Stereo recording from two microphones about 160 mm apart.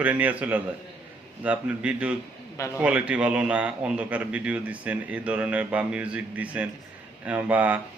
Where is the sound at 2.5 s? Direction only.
20° left (ahead or behind).